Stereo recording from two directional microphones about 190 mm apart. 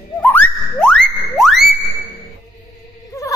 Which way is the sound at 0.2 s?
10° left (ahead or behind).